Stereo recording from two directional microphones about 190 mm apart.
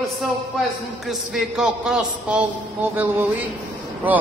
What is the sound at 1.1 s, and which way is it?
A man's voice, centre (ahead or behind).